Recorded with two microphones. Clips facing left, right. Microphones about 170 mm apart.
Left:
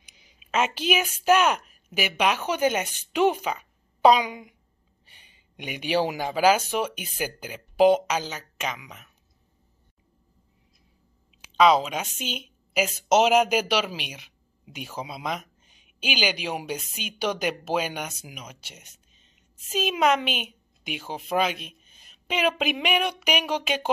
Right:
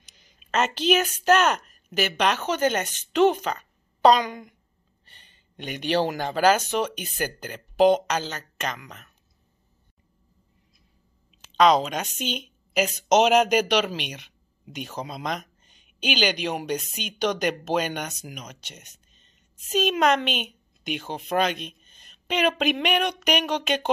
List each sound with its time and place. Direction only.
0.0 s a woman's voice: 10° left (ahead or behind)
11.5 s a woman's voice: 5° left (ahead or behind)